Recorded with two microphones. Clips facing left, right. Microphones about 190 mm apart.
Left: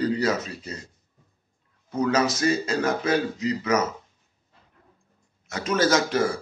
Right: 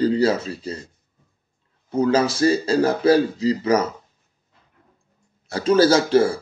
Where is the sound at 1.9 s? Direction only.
30° right (ahead or behind).